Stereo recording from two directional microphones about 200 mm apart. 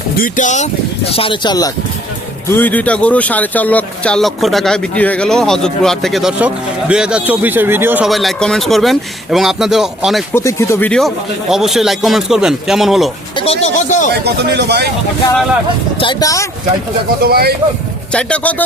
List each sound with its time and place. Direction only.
0.2 s speech: 40° left (ahead or behind); by 1.7 s 20° left (ahead or behind)
2.5 s speech: 10° left (ahead or behind)
10.3 s speech: 15° left (ahead or behind); by 13.1 s centre (ahead or behind)
13.3 s speech: 30° left (ahead or behind)
14.1 s speech: 55° right (ahead or behind)
16.0 s speech: 20° left (ahead or behind)
17.2 s speech: 50° right (ahead or behind)
18.1 s speech: 5° left (ahead or behind)